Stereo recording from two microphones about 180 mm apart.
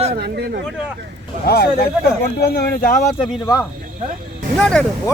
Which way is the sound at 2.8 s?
45° left (ahead or behind).